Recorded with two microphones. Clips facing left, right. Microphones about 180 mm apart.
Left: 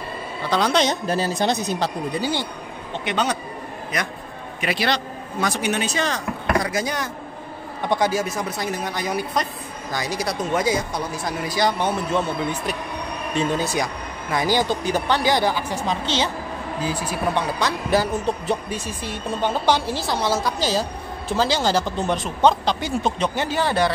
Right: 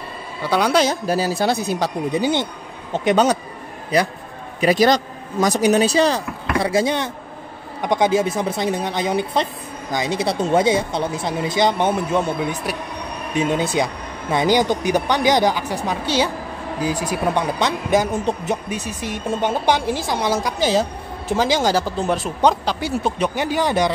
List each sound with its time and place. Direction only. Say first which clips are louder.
0.4 s speech: right 3 dB; 10° right (ahead or behind)
2.1 s speech: right 7 dB; 20° right (ahead or behind)
2.9 s speech: right 8 dB; 40° right (ahead or behind)
4.6 s speech: right 8 dB; 40° right (ahead or behind); by 23.9 s 15° right (ahead or behind)